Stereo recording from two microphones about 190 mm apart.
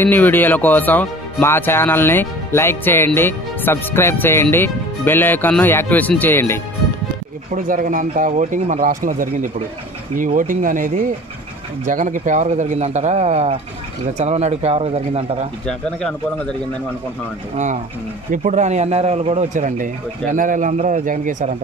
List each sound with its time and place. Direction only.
0.0 s speech: 10° left (ahead or behind)
7.5 s speech: 45° right (ahead or behind)
15.6 s speech: 5° left (ahead or behind)
18.3 s speech: 40° right (ahead or behind)